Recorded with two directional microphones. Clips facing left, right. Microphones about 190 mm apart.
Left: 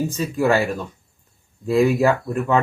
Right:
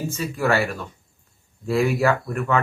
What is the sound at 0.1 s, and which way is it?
Speech, 20° left (ahead or behind).